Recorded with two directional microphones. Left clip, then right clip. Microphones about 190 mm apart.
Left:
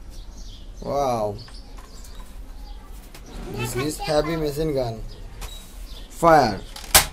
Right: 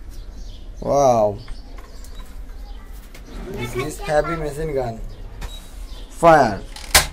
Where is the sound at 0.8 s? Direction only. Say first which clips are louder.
Right 8 dB; 10° right (ahead or behind).